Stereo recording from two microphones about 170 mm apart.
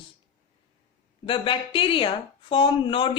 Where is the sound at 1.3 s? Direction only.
30° left (ahead or behind).